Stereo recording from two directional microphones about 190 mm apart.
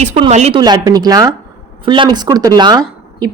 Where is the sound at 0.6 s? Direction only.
20° right (ahead or behind).